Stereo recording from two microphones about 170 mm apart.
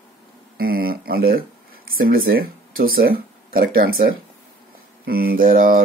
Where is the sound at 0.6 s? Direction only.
65° right (ahead or behind).